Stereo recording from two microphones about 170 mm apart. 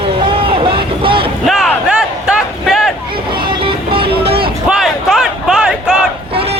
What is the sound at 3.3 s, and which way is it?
Music, 30° right (ahead or behind).